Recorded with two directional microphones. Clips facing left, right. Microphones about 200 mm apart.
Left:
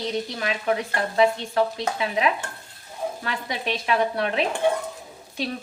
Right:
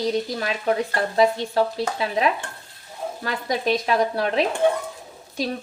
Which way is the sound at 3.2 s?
40° right (ahead or behind).